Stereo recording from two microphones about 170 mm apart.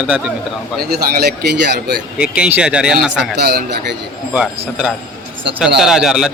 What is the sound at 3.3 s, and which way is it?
Speech, 75° right (ahead or behind).